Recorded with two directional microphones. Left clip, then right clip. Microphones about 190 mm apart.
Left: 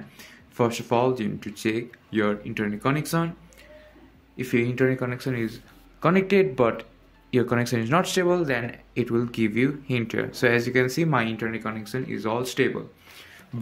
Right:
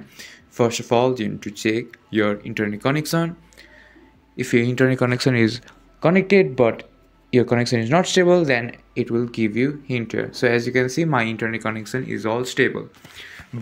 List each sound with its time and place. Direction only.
0.2 s speech: 15° right (ahead or behind)
4.4 s speech: 30° right (ahead or behind); by 5.6 s 50° right (ahead or behind)
5.9 s speech: 20° right (ahead or behind)
8.6 s speech: 5° right (ahead or behind)
11.3 s speech: 35° right (ahead or behind)